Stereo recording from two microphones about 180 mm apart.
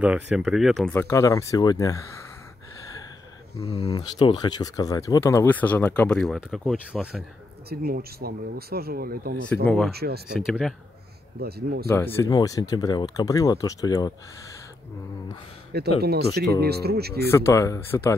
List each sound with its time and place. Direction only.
0.0 s speech: 5° right (ahead or behind)
0.9 s speech: 15° left (ahead or behind)
3.8 s speech: 20° left (ahead or behind); by 7.2 s 5° right (ahead or behind)
7.7 s speech: 55° right (ahead or behind)
10.3 s speech: 5° right (ahead or behind)
11.3 s speech: 60° right (ahead or behind)
11.9 s speech: 15° left (ahead or behind)
16.0 s speech: 65° right (ahead or behind)
17.3 s speech: 15° left (ahead or behind)